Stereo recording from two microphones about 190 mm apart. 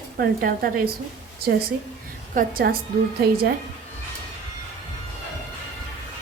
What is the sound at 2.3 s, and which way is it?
Speech, 50° right (ahead or behind).